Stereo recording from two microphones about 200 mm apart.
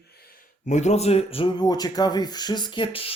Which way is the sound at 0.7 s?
35° left (ahead or behind).